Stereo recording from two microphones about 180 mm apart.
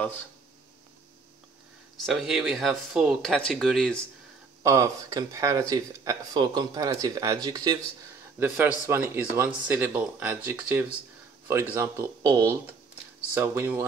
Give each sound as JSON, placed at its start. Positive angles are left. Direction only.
{"t": 2.0, "sound": "speech", "side_deg": 0}
{"t": 4.6, "sound": "speech", "side_deg": -20}
{"t": 8.4, "sound": "speech", "side_deg": -10}